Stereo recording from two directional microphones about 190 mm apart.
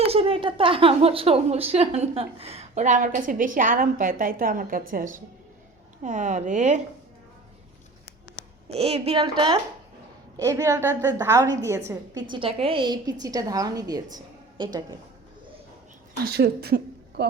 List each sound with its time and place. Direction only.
0.1 s a woman's voice: 30° right (ahead or behind)
8.7 s a woman's voice: 30° right (ahead or behind); by 12.2 s 15° right (ahead or behind)
12.3 s a woman's voice: 30° right (ahead or behind)
16.2 s speech: 60° right (ahead or behind)